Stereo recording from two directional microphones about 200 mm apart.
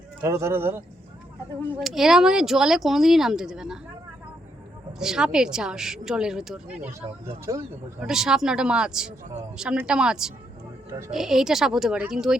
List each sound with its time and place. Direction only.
0.2 s speech: 15° right (ahead or behind)
1.8 s speech: centre (ahead or behind)
4.9 s speech: 5° right (ahead or behind)
7.5 s speech: 15° right (ahead or behind)
8.0 s speech: 5° right (ahead or behind)